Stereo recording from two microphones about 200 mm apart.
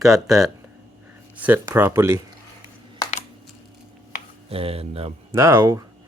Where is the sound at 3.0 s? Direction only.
20° left (ahead or behind).